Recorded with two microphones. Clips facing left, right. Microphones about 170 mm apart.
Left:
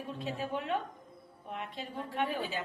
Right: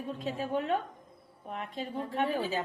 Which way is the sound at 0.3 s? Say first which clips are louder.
Right 4 dB; 45° right (ahead or behind).